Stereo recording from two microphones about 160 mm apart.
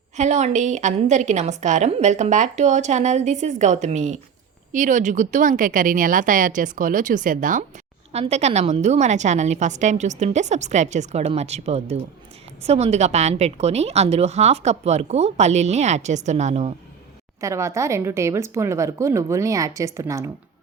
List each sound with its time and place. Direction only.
0.2 s a woman's voice: 45° right (ahead or behind)
8.1 s a woman's voice: 45° right (ahead or behind)
17.4 s a woman's voice: 20° right (ahead or behind)